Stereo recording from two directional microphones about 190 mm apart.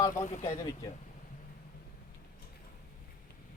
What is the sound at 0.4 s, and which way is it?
Speech, 15° left (ahead or behind).